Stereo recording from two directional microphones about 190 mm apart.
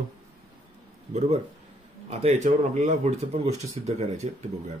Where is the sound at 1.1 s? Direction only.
35° right (ahead or behind).